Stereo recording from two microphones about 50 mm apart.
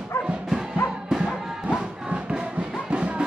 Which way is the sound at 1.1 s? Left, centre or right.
Centre.